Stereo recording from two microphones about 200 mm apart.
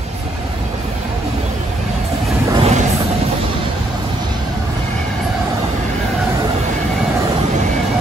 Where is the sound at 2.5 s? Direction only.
30° right (ahead or behind).